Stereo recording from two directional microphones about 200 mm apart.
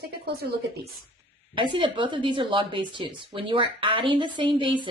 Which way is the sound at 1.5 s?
25° right (ahead or behind).